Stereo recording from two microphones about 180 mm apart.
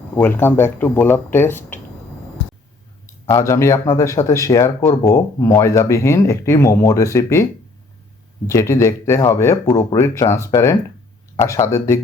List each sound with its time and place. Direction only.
0.2 s speech: 10° left (ahead or behind)
3.2 s speech: 15° left (ahead or behind)
8.4 s speech: 15° left (ahead or behind)